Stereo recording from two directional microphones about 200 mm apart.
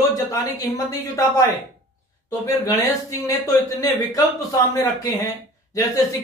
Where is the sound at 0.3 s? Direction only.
15° left (ahead or behind).